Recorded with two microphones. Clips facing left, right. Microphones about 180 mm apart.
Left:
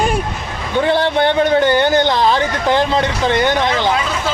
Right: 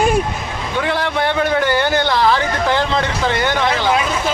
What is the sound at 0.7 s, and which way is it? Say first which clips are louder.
A man's voice: left 5 dB; 30° left (ahead or behind).